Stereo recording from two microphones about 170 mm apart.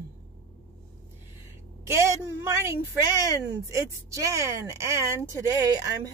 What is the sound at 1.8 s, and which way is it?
Speech, 15° right (ahead or behind).